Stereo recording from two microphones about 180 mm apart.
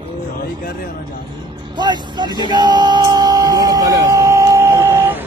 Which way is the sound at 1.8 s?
25° right (ahead or behind).